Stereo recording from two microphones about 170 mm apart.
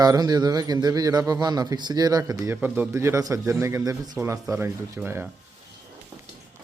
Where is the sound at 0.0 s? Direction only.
25° right (ahead or behind).